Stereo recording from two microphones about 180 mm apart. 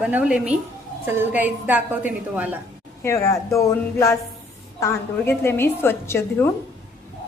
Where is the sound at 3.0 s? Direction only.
15° left (ahead or behind).